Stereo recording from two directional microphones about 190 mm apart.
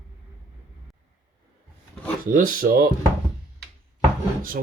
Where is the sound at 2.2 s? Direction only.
45° right (ahead or behind).